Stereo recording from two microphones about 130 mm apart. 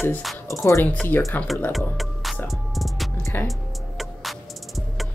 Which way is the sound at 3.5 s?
Centre (ahead or behind).